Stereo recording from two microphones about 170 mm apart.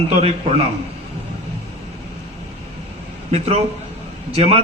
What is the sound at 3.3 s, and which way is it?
A man's voice, 40° right (ahead or behind).